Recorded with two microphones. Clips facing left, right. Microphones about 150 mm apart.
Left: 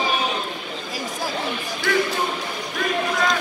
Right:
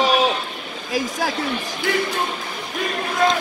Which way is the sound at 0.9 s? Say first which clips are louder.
Right 6 dB; 90° right.